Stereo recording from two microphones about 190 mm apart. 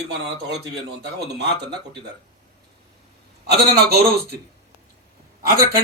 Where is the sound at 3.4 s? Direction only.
60° right (ahead or behind).